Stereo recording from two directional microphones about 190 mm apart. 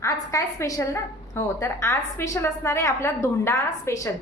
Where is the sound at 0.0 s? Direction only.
15° left (ahead or behind).